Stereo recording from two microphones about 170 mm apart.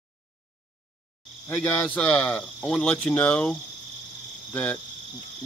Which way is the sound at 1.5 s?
5° left (ahead or behind).